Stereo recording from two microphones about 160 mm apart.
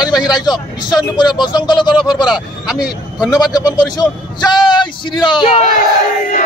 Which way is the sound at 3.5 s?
25° left (ahead or behind).